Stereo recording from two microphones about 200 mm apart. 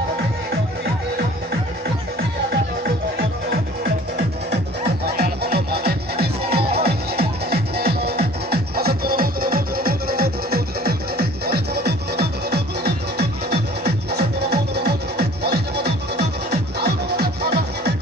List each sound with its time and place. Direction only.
2.5 s music: 50° right (ahead or behind)